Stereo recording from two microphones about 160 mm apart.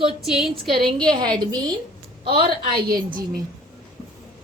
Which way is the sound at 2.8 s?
65° right (ahead or behind).